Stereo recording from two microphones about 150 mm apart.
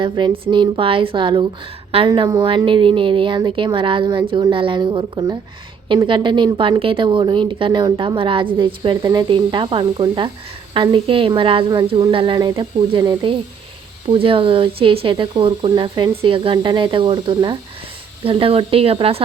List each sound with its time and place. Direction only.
0.0 s a woman's voice: 35° right (ahead or behind)